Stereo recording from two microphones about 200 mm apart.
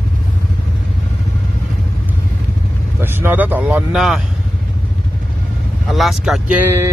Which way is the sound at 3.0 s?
10° right (ahead or behind).